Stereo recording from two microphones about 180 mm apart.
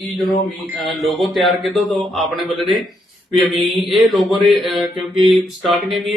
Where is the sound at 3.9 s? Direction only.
Centre (ahead or behind).